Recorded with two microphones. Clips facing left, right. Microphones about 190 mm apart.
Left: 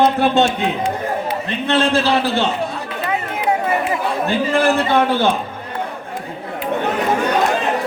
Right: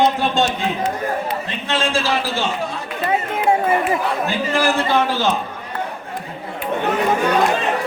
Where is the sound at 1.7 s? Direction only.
60° left (ahead or behind).